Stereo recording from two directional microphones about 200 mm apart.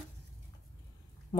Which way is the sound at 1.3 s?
20° left (ahead or behind).